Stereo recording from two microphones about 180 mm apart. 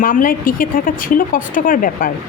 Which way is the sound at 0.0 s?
50° left (ahead or behind).